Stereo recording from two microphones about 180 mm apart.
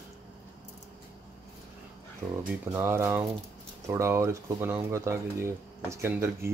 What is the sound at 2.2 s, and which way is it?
Speech, 15° right (ahead or behind).